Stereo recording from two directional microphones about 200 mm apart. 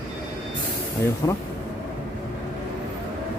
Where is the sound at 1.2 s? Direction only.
15° left (ahead or behind).